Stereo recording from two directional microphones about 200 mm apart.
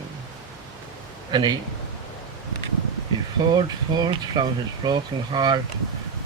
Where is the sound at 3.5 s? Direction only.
20° right (ahead or behind).